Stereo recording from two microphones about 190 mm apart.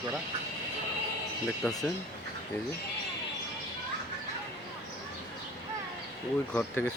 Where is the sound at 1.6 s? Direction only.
5° left (ahead or behind).